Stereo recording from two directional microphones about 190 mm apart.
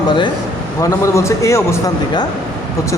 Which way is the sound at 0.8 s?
15° left (ahead or behind).